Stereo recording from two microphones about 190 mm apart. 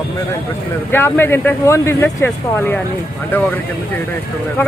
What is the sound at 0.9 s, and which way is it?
Speech, 10° left (ahead or behind).